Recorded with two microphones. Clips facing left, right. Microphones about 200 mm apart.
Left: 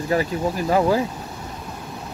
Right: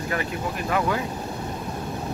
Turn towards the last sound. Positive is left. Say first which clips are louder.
# left 6 dB
turn(degrees=30)  # may be behind; listen again after turning